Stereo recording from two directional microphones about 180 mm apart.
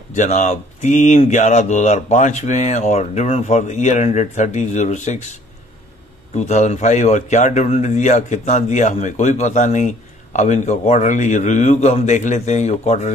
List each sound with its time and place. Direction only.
0.1 s a man's voice: 40° left (ahead or behind)